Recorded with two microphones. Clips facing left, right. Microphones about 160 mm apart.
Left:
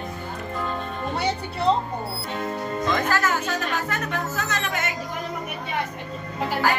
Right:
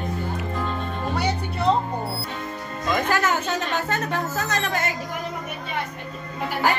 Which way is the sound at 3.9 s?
35° right (ahead or behind).